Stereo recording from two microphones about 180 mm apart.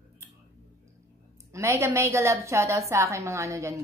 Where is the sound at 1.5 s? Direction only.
15° right (ahead or behind).